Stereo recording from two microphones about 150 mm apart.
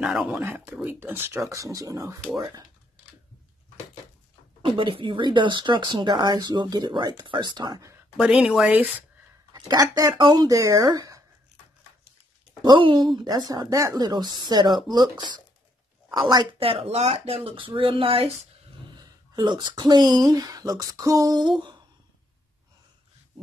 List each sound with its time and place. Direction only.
0.0 s speech: 5° right (ahead or behind)
0.3 s speech: 15° right (ahead or behind)
4.6 s speech: 35° right (ahead or behind)
8.2 s speech: 5° right (ahead or behind)
9.5 s speech: 25° right (ahead or behind)
12.6 s speech: 30° right (ahead or behind)